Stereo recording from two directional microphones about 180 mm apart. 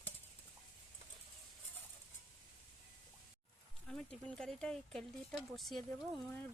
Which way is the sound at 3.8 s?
5° left (ahead or behind).